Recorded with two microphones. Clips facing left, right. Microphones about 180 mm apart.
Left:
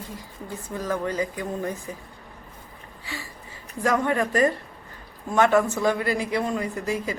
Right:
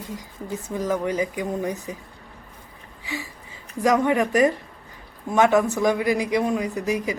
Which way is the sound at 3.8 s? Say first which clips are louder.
Right 3 dB; 15° right (ahead or behind).